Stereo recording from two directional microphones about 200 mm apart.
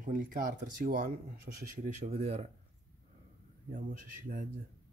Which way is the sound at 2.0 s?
30° right (ahead or behind).